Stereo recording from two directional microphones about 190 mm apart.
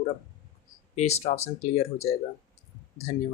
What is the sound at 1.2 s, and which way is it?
Speech, 35° left (ahead or behind).